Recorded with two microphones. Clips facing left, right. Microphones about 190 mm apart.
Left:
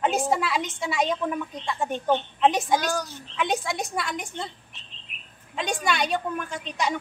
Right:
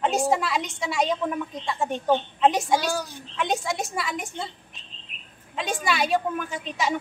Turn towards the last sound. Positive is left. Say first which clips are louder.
# right 1 dB
turn(degrees=-5)  # may be behind; listen again after turning